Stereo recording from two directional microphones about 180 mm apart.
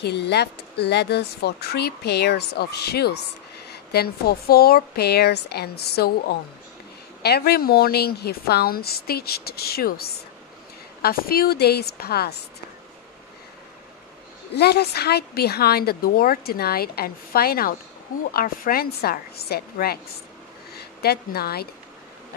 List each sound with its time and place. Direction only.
0.0 s speech: 65° left (ahead or behind)
7.2 s speech: 60° left (ahead or behind)
14.5 s a woman's voice: 65° left (ahead or behind)